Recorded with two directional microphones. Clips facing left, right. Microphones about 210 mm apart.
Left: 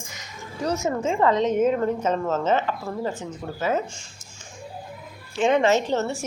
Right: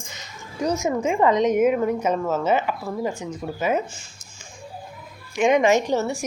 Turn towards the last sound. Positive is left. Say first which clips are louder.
# right 2 dB
turn(degrees=-10)  # may be behind; listen again after turning